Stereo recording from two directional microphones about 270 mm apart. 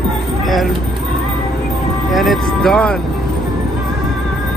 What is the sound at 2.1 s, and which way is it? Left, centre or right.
Speech, centre.